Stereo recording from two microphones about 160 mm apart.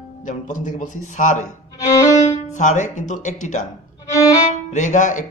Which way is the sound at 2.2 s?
45° left (ahead or behind).